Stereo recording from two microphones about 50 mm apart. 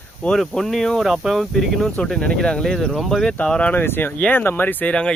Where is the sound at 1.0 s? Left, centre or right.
Centre.